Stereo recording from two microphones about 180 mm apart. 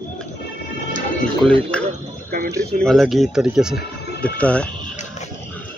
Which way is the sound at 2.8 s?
Centre (ahead or behind).